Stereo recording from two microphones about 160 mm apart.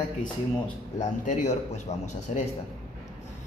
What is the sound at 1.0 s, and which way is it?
A man's voice, 45° left (ahead or behind).